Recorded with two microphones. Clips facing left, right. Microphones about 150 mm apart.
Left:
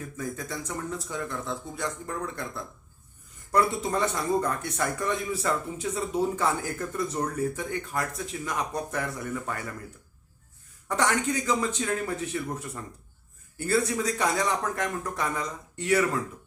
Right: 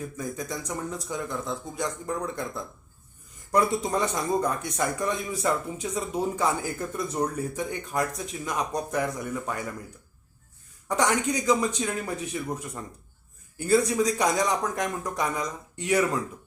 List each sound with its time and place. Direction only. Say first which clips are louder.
0.0 s a man's voice: right 1 dB; 15° right (ahead or behind)
3.5 s a man's voice: right 1 dB; 15° right (ahead or behind)
10.8 s a man's voice: right 1 dB; 15° right (ahead or behind)